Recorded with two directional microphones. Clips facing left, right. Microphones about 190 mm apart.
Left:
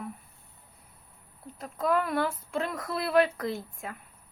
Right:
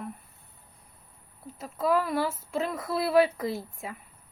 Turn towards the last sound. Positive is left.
turn(degrees=-5)  # may be behind; listen again after turning